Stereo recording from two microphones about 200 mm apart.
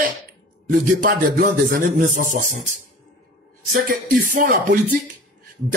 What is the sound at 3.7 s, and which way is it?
Speech, 40° right (ahead or behind).